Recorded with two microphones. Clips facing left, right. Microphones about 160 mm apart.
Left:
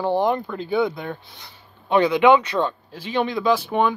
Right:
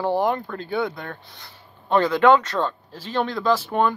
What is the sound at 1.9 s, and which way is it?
Speech, 15° left (ahead or behind).